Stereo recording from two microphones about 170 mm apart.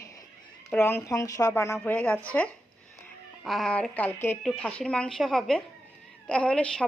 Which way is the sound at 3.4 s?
Centre (ahead or behind).